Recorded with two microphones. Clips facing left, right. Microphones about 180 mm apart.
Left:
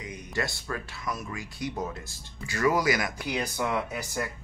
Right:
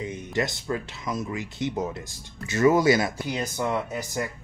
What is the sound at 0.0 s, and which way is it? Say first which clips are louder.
Speech: right 5 dB; 25° right (ahead or behind).